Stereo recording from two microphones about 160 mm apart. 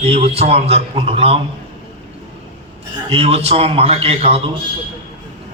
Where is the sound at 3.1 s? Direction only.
40° right (ahead or behind).